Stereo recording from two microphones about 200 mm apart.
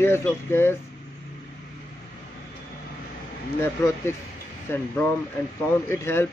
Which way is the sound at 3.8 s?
15° left (ahead or behind).